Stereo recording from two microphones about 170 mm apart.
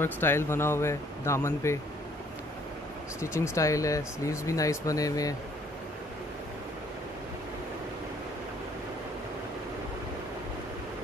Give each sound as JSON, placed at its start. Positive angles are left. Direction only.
{"t": 0.0, "sound": "speech", "side_deg": 15}
{"t": 3.2, "sound": "speech", "side_deg": 15}